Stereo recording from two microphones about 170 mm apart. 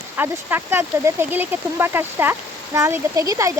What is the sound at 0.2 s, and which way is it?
Speech, 15° right (ahead or behind).